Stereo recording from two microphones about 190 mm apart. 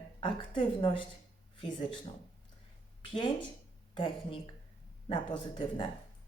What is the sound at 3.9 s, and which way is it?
A woman's voice, 25° left (ahead or behind).